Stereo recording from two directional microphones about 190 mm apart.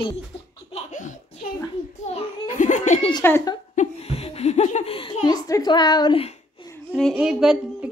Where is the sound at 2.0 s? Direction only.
40° left (ahead or behind).